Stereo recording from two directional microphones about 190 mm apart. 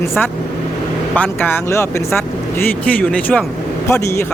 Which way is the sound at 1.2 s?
10° left (ahead or behind).